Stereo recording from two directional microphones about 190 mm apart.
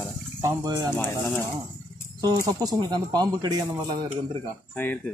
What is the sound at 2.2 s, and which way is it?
Speech, 20° right (ahead or behind).